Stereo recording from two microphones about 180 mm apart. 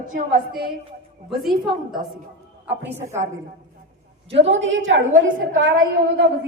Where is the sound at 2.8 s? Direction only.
15° right (ahead or behind).